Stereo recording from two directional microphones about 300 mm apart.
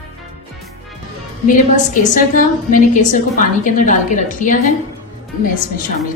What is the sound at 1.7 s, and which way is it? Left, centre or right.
A woman's voice, left.